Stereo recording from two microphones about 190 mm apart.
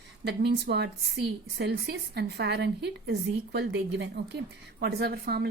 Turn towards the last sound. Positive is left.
turn(degrees=-55)  # may be behind; listen again after turning